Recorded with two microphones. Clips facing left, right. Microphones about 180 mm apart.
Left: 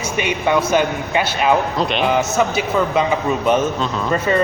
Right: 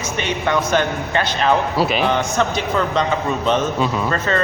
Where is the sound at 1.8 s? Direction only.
5° right (ahead or behind).